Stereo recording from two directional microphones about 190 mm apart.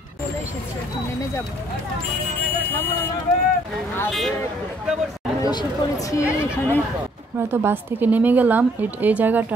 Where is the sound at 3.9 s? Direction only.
5° left (ahead or behind).